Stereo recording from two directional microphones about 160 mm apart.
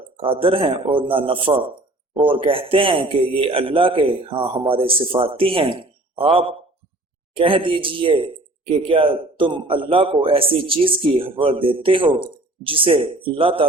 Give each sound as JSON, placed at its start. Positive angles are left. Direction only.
{"t": 0.2, "sound": "a man's voice", "side_deg": -35}